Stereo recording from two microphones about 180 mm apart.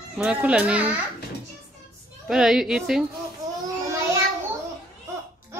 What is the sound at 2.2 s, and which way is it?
Speech, centre (ahead or behind).